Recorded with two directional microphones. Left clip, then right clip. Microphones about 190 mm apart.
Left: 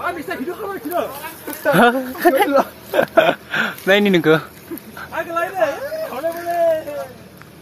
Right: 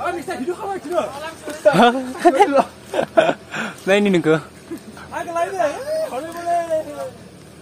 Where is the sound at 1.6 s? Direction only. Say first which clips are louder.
Even; 5° left (ahead or behind).